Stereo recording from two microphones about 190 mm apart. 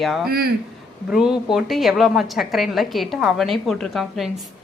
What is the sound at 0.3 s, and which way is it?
Speech, 55° right (ahead or behind).